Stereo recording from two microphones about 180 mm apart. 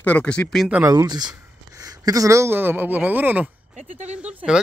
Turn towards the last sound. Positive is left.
turn(degrees=-5)  # may be behind; listen again after turning